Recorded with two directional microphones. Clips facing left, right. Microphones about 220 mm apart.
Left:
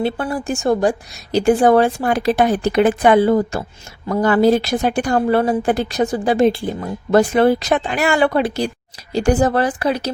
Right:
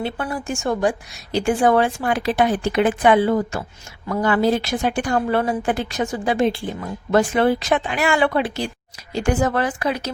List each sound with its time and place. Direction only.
0.0 s a woman's voice: 35° left (ahead or behind)